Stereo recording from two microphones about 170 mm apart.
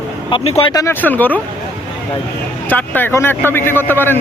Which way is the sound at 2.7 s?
10° left (ahead or behind).